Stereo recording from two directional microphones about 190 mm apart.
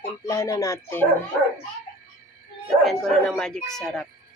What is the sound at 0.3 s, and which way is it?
Speech, 15° left (ahead or behind).